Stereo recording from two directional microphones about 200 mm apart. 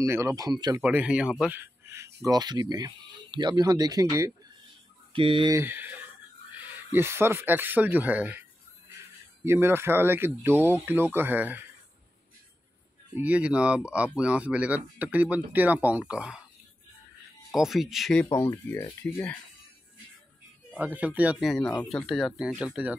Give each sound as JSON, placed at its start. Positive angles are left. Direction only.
{"t": 0.0, "sound": "speech", "side_deg": -15}
{"t": 0.8, "sound": "speech", "side_deg": -5}
{"t": 13.2, "sound": "speech", "side_deg": -5}
{"t": 17.5, "sound": "speech", "side_deg": 0}
{"t": 18.2, "sound": "speech", "side_deg": 15}
{"t": 20.7, "sound": "speech", "side_deg": -5}